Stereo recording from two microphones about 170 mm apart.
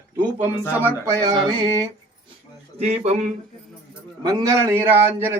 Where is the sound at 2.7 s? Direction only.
40° right (ahead or behind).